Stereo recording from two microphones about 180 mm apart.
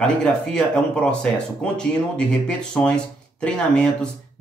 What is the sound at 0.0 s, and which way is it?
Speech, 5° left (ahead or behind).